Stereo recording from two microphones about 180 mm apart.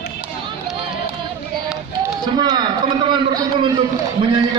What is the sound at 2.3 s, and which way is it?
A man's voice, 25° right (ahead or behind).